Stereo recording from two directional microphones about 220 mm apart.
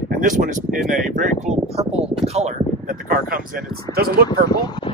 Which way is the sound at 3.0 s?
40° right (ahead or behind).